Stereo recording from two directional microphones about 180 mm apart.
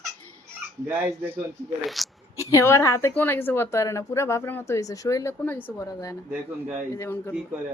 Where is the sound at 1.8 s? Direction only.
Centre (ahead or behind).